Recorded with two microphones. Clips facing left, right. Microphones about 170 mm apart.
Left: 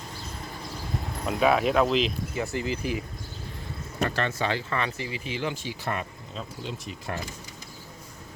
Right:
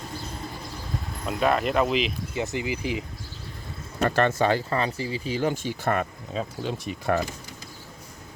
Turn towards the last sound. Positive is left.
turn(degrees=-60)  # may be behind; listen again after turning